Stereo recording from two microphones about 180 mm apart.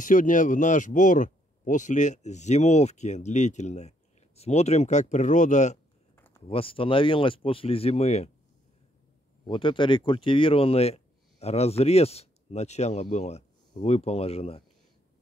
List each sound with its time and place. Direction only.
0.0 s speech: 45° left (ahead or behind)
6.1 s a sound: 10° left (ahead or behind)
6.4 s speech: 30° left (ahead or behind)
9.5 s speech: 25° left (ahead or behind)